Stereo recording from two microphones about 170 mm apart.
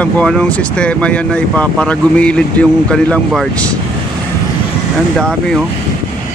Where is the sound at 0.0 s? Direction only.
5° left (ahead or behind).